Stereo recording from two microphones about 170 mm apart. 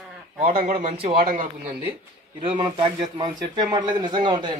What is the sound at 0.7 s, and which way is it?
Speech, 35° right (ahead or behind).